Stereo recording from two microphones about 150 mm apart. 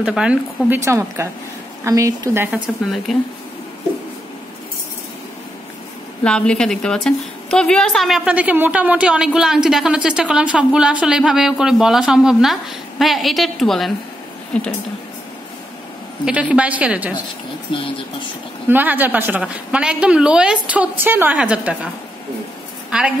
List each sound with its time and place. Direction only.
0.0 s a woman's voice: 5° right (ahead or behind)
0.8 s a woman's voice: 20° right (ahead or behind)
2.5 s a woman's voice: centre (ahead or behind)
6.2 s a woman's voice: 5° left (ahead or behind)
16.3 s a woman's voice: 10° right (ahead or behind)
17.7 s speech: 35° left (ahead or behind)
18.7 s a woman's voice: 10° right (ahead or behind)
22.8 s a woman's voice: 5° right (ahead or behind)